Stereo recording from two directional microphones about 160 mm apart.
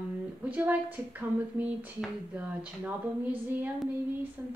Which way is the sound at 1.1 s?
10° right (ahead or behind).